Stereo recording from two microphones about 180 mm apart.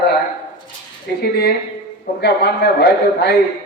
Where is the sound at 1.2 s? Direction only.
60° left (ahead or behind).